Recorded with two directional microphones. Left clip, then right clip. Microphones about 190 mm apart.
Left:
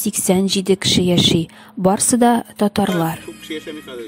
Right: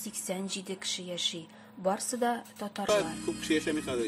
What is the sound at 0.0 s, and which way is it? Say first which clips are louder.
Speech: left 18 dB; 50° left (ahead or behind).